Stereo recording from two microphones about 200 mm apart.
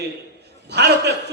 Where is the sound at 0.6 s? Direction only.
55° right (ahead or behind).